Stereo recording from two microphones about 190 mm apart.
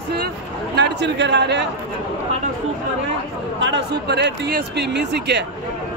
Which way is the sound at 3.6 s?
65° right (ahead or behind).